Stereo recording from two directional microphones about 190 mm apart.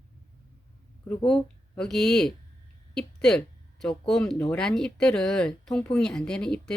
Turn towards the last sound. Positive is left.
turn(degrees=5)  # may be behind; listen again after turning